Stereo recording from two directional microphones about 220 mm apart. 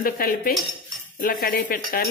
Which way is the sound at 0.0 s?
40° left (ahead or behind).